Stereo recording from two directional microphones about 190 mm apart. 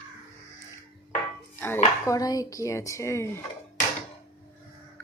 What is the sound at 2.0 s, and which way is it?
Speech, 20° left (ahead or behind).